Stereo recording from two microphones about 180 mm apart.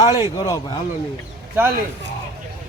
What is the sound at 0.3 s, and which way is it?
Speech, 20° left (ahead or behind).